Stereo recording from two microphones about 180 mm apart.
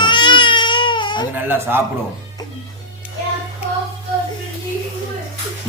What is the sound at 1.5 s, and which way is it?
Speech, 10° right (ahead or behind).